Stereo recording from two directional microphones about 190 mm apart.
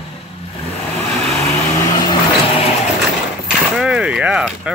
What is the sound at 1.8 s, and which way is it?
Vehicle, 20° left (ahead or behind).